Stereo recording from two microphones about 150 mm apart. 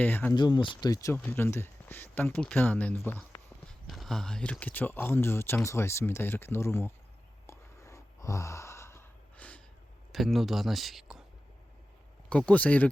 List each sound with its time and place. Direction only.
0.0 s speech: 10° left (ahead or behind)
0.3 s speech: 30° left (ahead or behind)
1.1 s speech: 15° left (ahead or behind)
3.8 s speech: centre (ahead or behind); by 6.9 s 15° left (ahead or behind)
7.4 s sigh: 20° left (ahead or behind)
10.1 s speech: centre (ahead or behind)
12.3 s speech: 10° left (ahead or behind)